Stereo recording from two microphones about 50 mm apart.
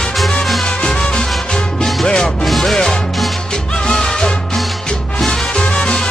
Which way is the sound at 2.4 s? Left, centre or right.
Centre.